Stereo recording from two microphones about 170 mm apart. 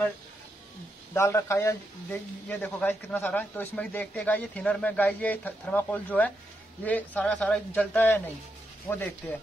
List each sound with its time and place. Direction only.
1.1 s speech: 15° left (ahead or behind)